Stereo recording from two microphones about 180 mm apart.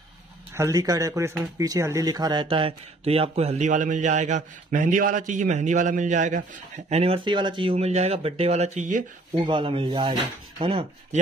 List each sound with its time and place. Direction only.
0.6 s speech: 20° right (ahead or behind); by 6.4 s 45° right (ahead or behind)
6.9 s speech: 35° right (ahead or behind)
9.5 s speech: 30° right (ahead or behind)